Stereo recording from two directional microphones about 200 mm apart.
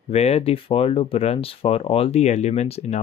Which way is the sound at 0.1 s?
30° left (ahead or behind).